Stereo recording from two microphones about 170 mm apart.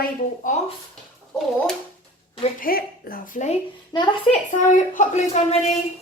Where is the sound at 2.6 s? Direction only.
60° left (ahead or behind).